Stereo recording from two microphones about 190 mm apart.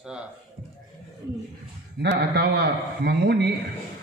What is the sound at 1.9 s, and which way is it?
A man's voice, 60° right (ahead or behind).